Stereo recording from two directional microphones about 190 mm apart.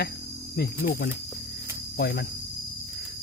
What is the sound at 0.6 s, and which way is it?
Speech, 50° left (ahead or behind).